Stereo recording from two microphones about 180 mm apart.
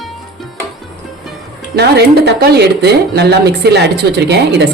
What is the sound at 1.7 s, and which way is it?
Speech, 65° right (ahead or behind).